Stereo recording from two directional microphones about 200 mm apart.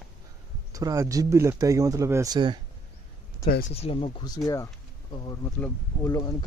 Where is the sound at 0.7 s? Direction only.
15° right (ahead or behind).